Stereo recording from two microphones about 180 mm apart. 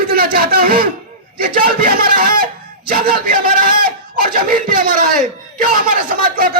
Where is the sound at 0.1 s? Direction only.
55° right (ahead or behind).